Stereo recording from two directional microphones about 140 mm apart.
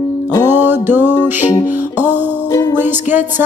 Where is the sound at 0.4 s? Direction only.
15° right (ahead or behind).